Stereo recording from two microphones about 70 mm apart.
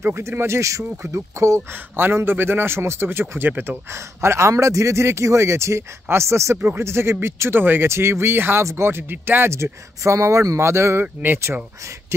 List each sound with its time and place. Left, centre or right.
0.0 s a man's voice: right
2.0 s a man's voice: right
9.5 s a man's voice: right